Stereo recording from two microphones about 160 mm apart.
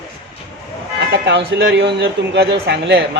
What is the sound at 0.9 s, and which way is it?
Vehicle, 90° right.